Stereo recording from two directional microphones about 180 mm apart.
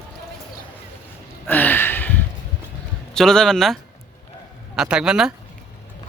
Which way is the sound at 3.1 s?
5° left (ahead or behind).